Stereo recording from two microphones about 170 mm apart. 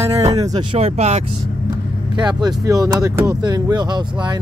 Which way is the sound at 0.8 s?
40° right (ahead or behind).